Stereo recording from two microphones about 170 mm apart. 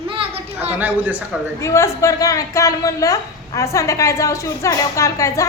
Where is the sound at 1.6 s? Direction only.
15° left (ahead or behind).